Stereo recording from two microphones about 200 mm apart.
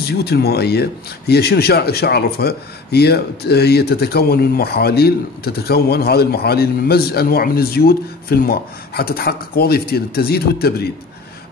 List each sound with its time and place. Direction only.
0.2 s speech: 55° left (ahead or behind)